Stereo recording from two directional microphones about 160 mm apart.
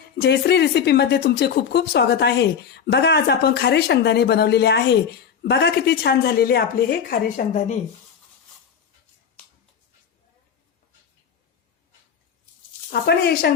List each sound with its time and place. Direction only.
0.2 s speech: 90° left; by 7.8 s 55° left (ahead or behind)
12.9 s speech: 85° left